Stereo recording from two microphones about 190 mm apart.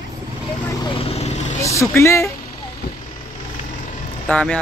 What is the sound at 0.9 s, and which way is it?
Vehicle, 30° left (ahead or behind).